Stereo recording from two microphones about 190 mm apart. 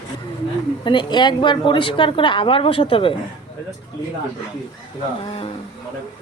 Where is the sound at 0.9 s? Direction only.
25° left (ahead or behind).